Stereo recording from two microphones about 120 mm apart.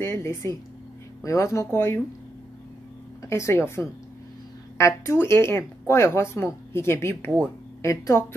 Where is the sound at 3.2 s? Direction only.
25° left (ahead or behind).